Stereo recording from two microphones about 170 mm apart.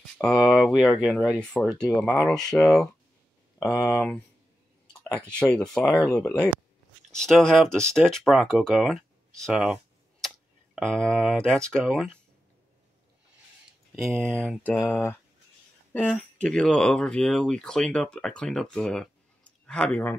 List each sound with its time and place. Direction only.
0.2 s speech: 5° left (ahead or behind)
3.5 s speech: 20° left (ahead or behind)
5.3 s speech: 5° left (ahead or behind)
14.2 s speech: 5° left (ahead or behind)